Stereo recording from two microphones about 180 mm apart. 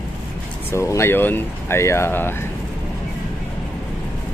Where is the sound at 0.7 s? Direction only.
15° left (ahead or behind).